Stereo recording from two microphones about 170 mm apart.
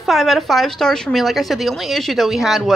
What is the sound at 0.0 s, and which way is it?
A woman's voice, centre (ahead or behind).